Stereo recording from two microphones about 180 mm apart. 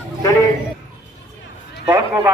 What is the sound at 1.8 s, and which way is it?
Speech, 15° right (ahead or behind).